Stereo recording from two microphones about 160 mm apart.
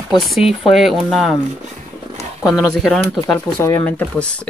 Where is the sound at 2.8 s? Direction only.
Centre (ahead or behind).